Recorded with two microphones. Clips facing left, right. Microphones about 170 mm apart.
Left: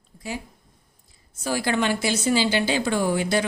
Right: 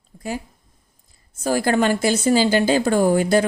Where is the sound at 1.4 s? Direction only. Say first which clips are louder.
Right 5 dB; 45° right (ahead or behind).